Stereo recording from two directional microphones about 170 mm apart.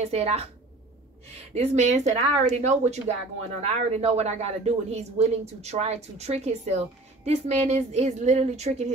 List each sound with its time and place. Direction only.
0.0 s speech: 35° right (ahead or behind)
1.5 s speech: 40° right (ahead or behind)